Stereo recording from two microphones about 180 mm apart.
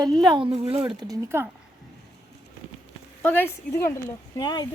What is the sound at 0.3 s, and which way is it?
Speech, 30° right (ahead or behind).